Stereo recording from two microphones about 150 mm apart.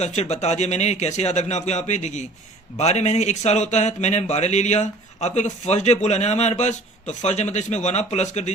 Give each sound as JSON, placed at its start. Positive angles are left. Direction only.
{"t": 0.0, "sound": "speech", "side_deg": 50}